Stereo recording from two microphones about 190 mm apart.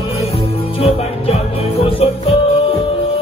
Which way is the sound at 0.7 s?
30° left (ahead or behind).